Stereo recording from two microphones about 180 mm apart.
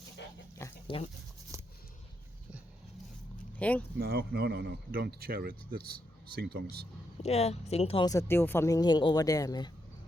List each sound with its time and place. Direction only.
0.6 s chicken: 15° left (ahead or behind)
3.6 s speech: 10° left (ahead or behind)
3.9 s speech: 60° right (ahead or behind)
7.2 s speech: 35° left (ahead or behind)
8.0 s speech: 15° left (ahead or behind)